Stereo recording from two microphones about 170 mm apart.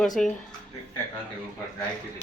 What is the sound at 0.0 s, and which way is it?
Speech, centre (ahead or behind).